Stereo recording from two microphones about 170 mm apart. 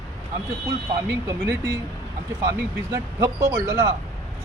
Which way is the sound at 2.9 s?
15° right (ahead or behind).